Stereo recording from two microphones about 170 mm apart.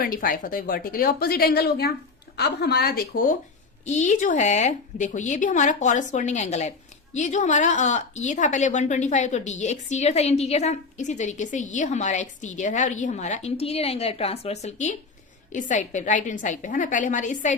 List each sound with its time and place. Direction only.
0.0 s speech: 55° left (ahead or behind)
3.8 s a woman's voice: 45° left (ahead or behind)